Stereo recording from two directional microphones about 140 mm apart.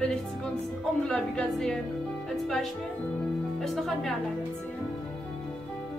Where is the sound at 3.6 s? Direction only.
Centre (ahead or behind).